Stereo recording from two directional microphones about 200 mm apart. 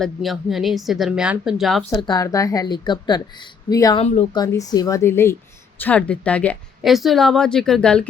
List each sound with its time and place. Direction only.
0.0 s a woman's voice: centre (ahead or behind)
1.9 s a woman's voice: 20° left (ahead or behind)
4.0 s speech: 35° left (ahead or behind)
4.4 s a woman's voice: 20° left (ahead or behind)